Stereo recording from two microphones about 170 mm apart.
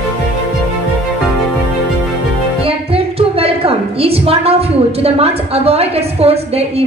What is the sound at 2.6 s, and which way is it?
A woman's voice, 35° right (ahead or behind).